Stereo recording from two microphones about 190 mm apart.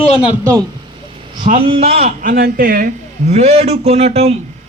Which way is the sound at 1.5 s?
30° right (ahead or behind).